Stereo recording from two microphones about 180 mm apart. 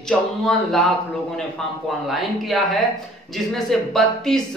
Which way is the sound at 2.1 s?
Centre (ahead or behind).